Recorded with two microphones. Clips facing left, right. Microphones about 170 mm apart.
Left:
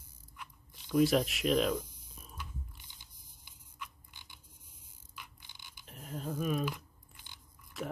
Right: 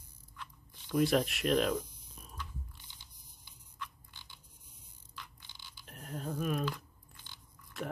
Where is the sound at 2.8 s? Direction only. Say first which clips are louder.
Right 1 dB; 15° left (ahead or behind).